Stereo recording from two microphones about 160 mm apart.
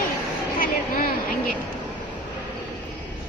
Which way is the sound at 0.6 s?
60° left (ahead or behind).